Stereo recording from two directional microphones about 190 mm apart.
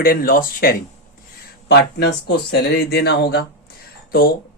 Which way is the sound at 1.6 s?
60° left (ahead or behind).